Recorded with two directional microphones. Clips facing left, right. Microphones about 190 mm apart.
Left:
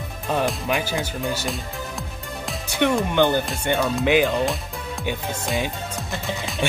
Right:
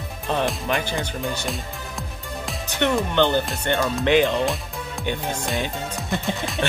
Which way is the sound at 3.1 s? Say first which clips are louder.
Left 1 dB; 10° left (ahead or behind).